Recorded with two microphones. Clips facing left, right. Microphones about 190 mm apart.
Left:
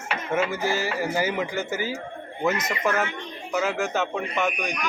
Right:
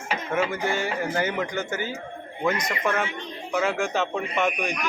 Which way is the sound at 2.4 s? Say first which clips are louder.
Left 1 dB; 5° left (ahead or behind).